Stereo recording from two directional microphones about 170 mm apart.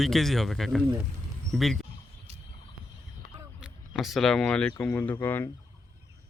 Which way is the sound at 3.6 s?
Centre (ahead or behind).